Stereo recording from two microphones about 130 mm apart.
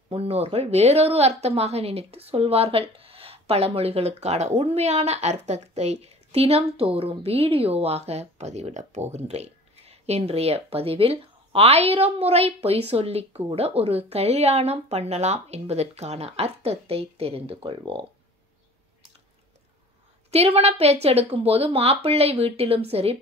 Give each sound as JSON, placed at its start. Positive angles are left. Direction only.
{"t": 0.1, "sound": "a woman's voice", "side_deg": -50}
{"t": 20.2, "sound": "a woman's voice", "side_deg": -50}